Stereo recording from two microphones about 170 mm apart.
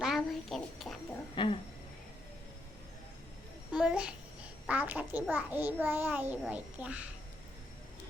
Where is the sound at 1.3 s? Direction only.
30° left (ahead or behind).